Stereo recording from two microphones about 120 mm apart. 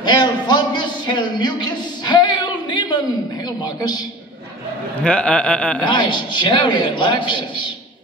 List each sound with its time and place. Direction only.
0.0 s a sound: 40° left (ahead or behind)
3.4 s a man's voice: 35° left (ahead or behind)
5.0 s speech: 10° left (ahead or behind)
5.9 s a man's voice: 40° left (ahead or behind)